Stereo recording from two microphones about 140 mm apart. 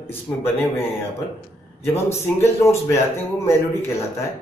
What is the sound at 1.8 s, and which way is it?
A man's voice, 20° left (ahead or behind).